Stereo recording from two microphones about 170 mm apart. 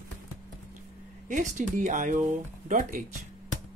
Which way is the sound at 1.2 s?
45° right (ahead or behind).